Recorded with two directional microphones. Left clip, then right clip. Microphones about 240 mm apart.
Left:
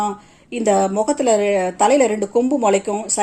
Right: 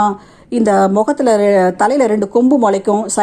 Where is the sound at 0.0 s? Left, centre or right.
Right.